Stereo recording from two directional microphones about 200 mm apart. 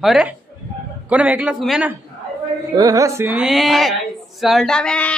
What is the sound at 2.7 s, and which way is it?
Speech, 15° right (ahead or behind).